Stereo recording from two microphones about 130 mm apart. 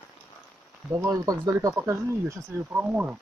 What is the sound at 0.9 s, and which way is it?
Speech, 25° right (ahead or behind).